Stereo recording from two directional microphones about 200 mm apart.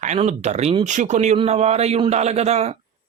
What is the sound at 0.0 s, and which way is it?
Speech, 35° right (ahead or behind).